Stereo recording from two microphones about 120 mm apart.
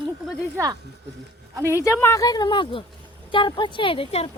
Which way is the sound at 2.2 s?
35° left (ahead or behind).